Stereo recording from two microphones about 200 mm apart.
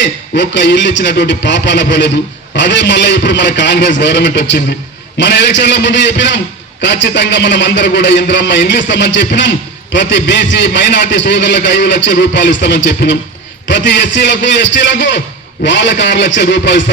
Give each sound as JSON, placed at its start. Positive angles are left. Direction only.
{"t": 0.0, "sound": "a man's voice", "side_deg": 60}